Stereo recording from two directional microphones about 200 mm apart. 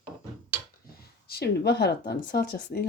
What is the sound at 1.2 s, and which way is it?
Speech, 50° left (ahead or behind).